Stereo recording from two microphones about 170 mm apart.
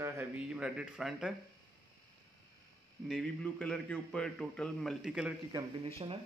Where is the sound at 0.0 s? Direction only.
10° right (ahead or behind).